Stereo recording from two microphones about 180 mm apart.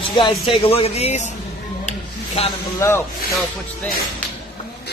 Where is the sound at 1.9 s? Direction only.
35° left (ahead or behind).